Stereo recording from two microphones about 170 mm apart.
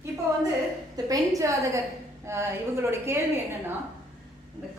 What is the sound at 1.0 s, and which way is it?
A woman's voice, 20° right (ahead or behind).